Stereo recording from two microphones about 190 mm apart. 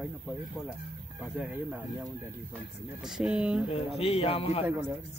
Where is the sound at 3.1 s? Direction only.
5° right (ahead or behind).